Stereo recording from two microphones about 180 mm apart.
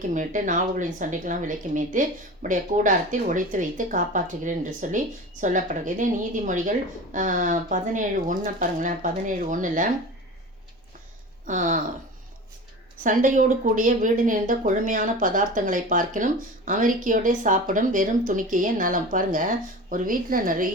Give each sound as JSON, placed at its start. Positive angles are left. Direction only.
{"t": 0.1, "sound": "speech", "side_deg": -45}
{"t": 11.4, "sound": "speech", "side_deg": -45}
{"t": 13.0, "sound": "speech", "side_deg": -45}